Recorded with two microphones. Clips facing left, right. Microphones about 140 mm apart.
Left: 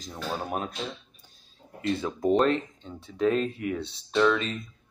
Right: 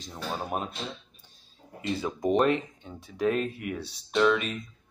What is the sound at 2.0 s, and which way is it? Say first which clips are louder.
Speech: left 1 dB; 10° right (ahead or behind).